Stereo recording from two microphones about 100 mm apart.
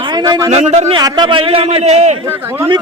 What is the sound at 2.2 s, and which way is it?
Speech, 25° right (ahead or behind).